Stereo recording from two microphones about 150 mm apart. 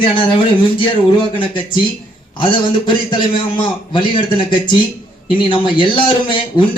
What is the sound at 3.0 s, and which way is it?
Speech, 30° left (ahead or behind).